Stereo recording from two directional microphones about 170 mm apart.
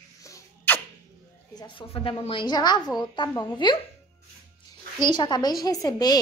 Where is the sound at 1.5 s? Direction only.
25° left (ahead or behind).